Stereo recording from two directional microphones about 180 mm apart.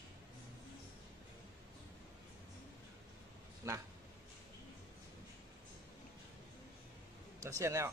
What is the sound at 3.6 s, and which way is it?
Speech, 15° right (ahead or behind).